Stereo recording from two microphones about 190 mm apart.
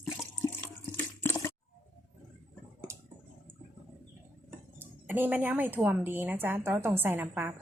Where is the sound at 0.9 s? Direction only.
10° left (ahead or behind).